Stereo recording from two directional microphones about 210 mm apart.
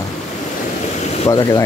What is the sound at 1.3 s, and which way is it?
Speech, 15° left (ahead or behind).